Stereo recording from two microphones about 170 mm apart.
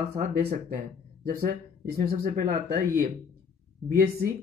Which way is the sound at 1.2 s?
60° right (ahead or behind).